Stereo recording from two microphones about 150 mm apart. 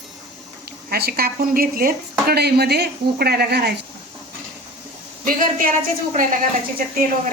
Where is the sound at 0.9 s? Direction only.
90° right.